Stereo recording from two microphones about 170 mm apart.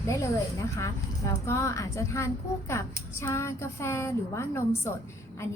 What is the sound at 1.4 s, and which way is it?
A woman's voice, 15° left (ahead or behind).